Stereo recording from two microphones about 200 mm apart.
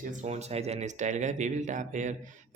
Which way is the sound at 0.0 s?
40° right (ahead or behind).